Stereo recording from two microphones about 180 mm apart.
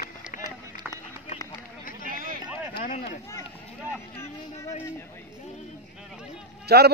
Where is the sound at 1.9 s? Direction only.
50° left (ahead or behind).